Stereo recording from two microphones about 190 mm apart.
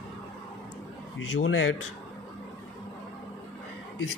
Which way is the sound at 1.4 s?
90° left.